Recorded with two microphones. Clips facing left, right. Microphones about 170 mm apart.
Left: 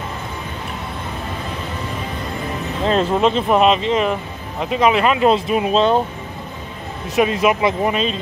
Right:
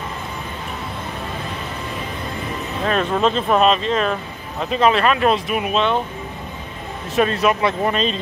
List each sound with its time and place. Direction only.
2.8 s speech: 25° left (ahead or behind)
7.2 s speech: 15° left (ahead or behind)